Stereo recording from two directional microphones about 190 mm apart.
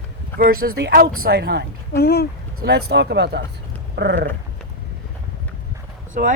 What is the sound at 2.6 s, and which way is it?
Speech, 60° right (ahead or behind).